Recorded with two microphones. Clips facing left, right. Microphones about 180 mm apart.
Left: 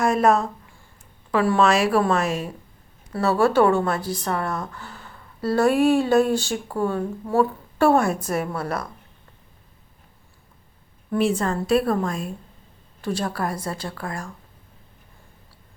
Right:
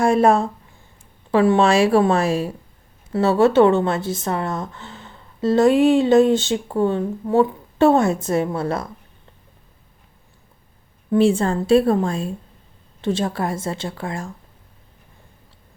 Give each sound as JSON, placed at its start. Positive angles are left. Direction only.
{"t": 0.0, "sound": "a woman's voice", "side_deg": -30}
{"t": 11.1, "sound": "a woman's voice", "side_deg": -30}